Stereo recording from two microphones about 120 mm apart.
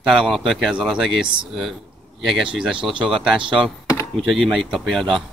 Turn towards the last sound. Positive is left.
turn(degrees=0)  # may be behind; listen again after turning